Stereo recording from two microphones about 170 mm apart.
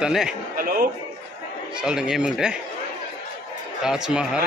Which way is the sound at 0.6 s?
55° right (ahead or behind).